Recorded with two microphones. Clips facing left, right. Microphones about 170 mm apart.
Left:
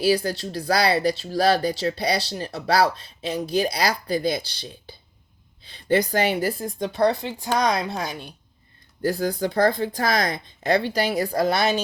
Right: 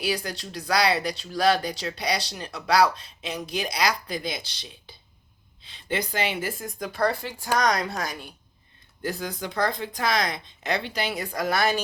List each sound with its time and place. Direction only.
0.0 s a woman's voice: 30° left (ahead or behind)
9.0 s speech: 35° left (ahead or behind)